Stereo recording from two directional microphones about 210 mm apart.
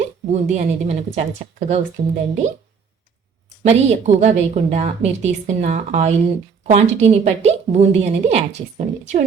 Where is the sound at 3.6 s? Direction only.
35° right (ahead or behind).